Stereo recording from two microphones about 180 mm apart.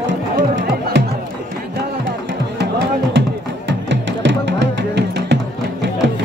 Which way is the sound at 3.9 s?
75° right (ahead or behind).